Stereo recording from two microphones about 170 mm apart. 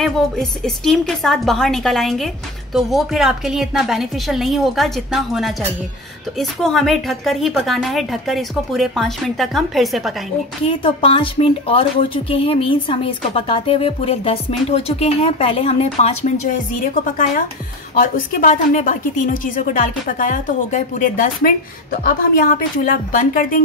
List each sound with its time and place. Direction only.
0.0 s a woman's voice: centre (ahead or behind)
10.8 s a woman's voice: 30° left (ahead or behind)
17.9 s a woman's voice: 55° left (ahead or behind)